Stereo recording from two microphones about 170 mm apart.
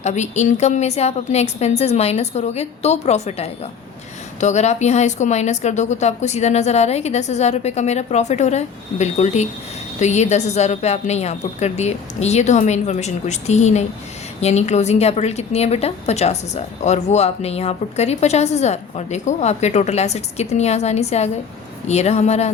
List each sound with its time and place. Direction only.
0.0 s a woman's voice: 40° left (ahead or behind)